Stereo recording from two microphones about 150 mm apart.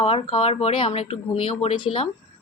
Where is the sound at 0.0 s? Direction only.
40° left (ahead or behind).